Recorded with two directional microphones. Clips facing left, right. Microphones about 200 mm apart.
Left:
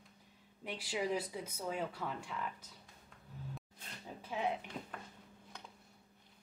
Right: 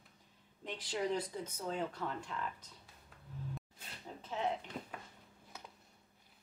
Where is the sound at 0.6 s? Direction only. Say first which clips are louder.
Even; 10° left (ahead or behind).